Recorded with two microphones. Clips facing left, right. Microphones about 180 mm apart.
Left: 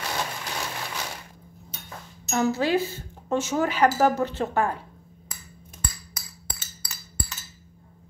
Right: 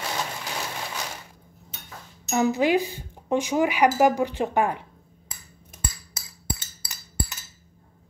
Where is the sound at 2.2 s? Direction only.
15° right (ahead or behind).